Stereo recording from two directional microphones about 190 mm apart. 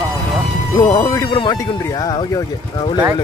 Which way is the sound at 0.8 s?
20° left (ahead or behind).